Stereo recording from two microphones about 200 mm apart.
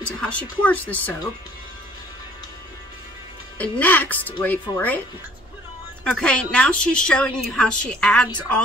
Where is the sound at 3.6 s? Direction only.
10° left (ahead or behind).